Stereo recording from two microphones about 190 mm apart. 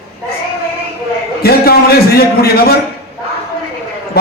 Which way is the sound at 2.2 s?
55° left (ahead or behind).